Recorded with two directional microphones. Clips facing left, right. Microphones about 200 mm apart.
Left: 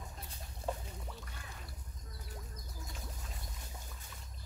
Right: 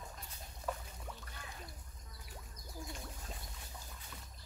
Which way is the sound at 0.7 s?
25° left (ahead or behind).